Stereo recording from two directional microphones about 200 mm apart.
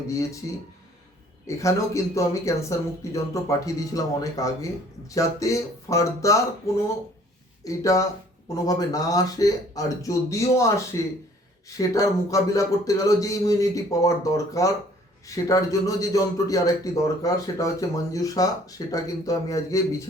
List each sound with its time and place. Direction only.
0.1 s a man's voice: 15° left (ahead or behind)
1.5 s a man's voice: 15° left (ahead or behind)